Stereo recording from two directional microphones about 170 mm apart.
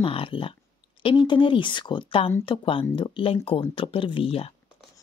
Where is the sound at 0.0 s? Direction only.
30° left (ahead or behind).